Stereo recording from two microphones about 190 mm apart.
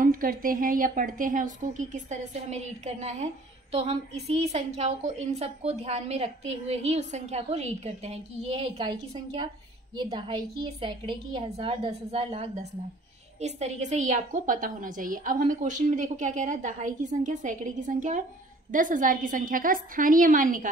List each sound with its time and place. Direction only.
0.0 s a woman's voice: 50° right (ahead or behind)